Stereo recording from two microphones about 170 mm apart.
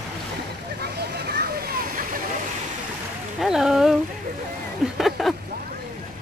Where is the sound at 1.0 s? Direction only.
70° right (ahead or behind).